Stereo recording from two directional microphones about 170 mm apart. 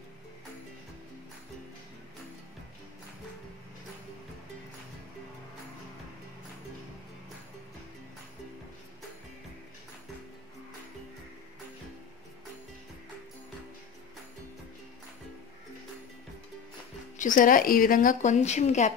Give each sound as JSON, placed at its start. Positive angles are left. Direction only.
{"t": 17.2, "sound": "a woman's voice", "side_deg": 50}